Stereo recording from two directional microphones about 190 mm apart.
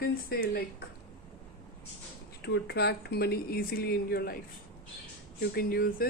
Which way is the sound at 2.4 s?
60° left (ahead or behind).